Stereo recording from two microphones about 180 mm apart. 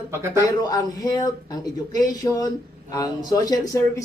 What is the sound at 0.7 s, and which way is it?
Speech, 20° left (ahead or behind).